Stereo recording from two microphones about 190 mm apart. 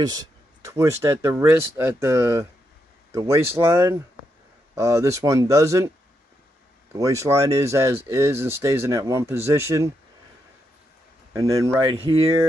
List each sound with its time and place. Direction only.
0.0 s speech: 20° right (ahead or behind)
7.0 s speech: 15° right (ahead or behind)
11.3 s speech: 15° right (ahead or behind)